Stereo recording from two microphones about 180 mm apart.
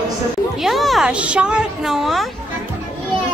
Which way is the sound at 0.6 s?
Centre (ahead or behind).